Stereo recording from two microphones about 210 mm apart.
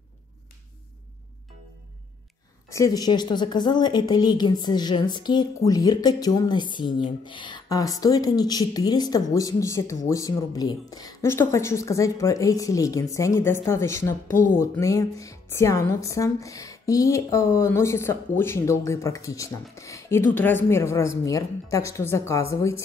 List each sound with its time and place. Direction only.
2.7 s a woman's voice: 15° left (ahead or behind)